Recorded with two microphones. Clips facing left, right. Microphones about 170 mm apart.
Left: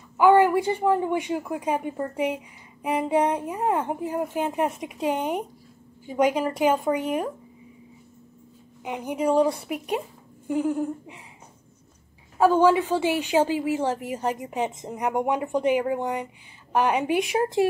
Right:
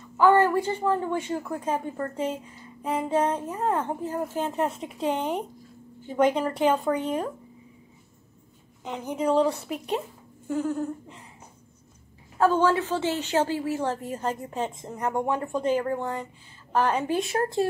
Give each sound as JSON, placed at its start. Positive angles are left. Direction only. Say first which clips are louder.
{"t": 0.2, "sound": "a woman's voice", "louder": "left 2 dB", "side_deg": 10}
{"t": 8.8, "sound": "a woman's voice", "louder": "left 2 dB", "side_deg": 10}
{"t": 12.4, "sound": "a woman's voice", "louder": "left 3 dB", "side_deg": 10}